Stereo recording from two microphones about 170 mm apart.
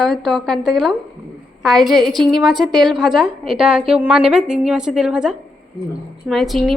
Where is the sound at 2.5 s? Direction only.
25° right (ahead or behind).